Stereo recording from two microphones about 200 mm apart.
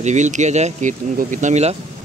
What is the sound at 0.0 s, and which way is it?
Speech, 35° right (ahead or behind).